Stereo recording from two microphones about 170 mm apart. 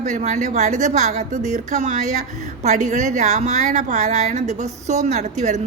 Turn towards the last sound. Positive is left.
turn(degrees=-40)  # may be behind; listen again after turning